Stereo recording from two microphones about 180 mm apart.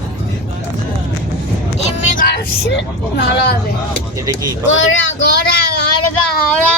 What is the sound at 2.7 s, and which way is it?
Speech, 70° left (ahead or behind).